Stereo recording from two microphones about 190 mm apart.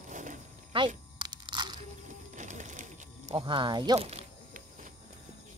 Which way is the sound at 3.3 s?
25° right (ahead or behind).